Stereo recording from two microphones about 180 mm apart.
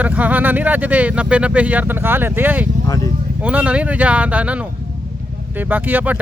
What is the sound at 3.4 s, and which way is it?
Speech, 5° right (ahead or behind).